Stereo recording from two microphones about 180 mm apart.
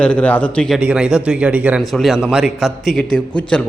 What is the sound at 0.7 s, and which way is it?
A man's voice, 5° right (ahead or behind).